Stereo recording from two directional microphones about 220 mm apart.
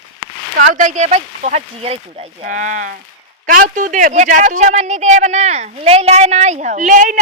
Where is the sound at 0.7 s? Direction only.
35° right (ahead or behind).